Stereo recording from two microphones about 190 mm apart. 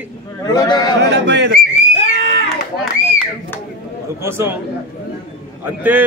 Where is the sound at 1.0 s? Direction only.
65° right (ahead or behind).